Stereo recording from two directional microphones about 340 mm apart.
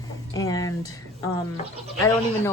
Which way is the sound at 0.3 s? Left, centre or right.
Centre.